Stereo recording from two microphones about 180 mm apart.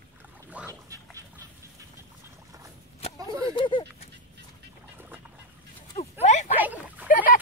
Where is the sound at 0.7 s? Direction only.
20° right (ahead or behind).